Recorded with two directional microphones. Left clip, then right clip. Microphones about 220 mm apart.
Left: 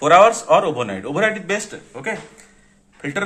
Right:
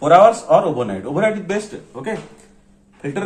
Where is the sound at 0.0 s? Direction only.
35° left (ahead or behind).